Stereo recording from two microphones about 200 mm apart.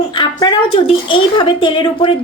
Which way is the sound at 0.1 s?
25° left (ahead or behind).